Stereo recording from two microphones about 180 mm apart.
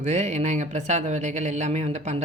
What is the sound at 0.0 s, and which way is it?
Speech, 40° right (ahead or behind).